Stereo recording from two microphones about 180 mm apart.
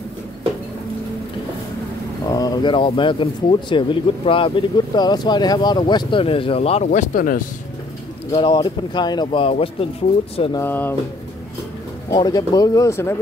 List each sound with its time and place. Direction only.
2.2 s speech: 20° left (ahead or behind); by 7.4 s 50° left (ahead or behind)
8.3 s speech: 30° left (ahead or behind)
10.6 s speech: 10° left (ahead or behind)
12.1 s speech: 25° left (ahead or behind)